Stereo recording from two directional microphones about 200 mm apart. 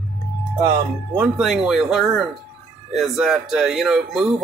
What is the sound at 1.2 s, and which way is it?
Speech, 5° right (ahead or behind).